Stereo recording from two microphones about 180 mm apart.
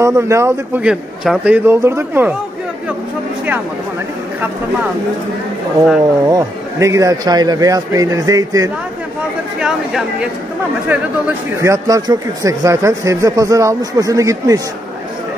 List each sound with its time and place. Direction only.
0.0 s speech: 15° right (ahead or behind)
6.2 s speech: 20° right (ahead or behind)
9.6 s speech: 5° right (ahead or behind)